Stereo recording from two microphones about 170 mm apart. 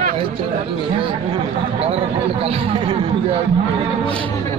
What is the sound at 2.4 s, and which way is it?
Chatter, 35° right (ahead or behind).